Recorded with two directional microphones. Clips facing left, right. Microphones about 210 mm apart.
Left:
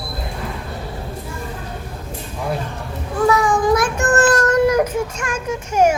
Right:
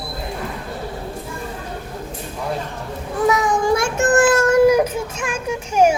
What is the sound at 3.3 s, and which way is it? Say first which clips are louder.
Child singing: left 1 dB; 20° right (ahead or behind).